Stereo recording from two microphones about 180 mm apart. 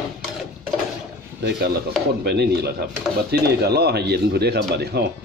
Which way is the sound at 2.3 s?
65° right (ahead or behind).